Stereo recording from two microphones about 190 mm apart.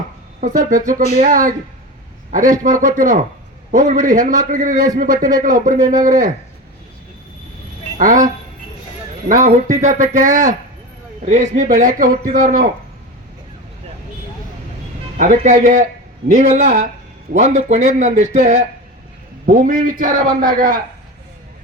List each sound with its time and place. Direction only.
0.4 s a man's voice: 45° right (ahead or behind)
7.9 s a man's voice: 45° right (ahead or behind)
9.3 s a man's voice: 40° right (ahead or behind)
15.2 s a man's voice: 40° right (ahead or behind)